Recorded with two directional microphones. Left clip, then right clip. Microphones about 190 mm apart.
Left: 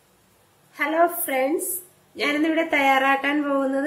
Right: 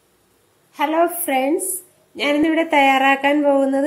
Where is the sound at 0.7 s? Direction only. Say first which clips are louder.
Right 3 dB; 25° right (ahead or behind).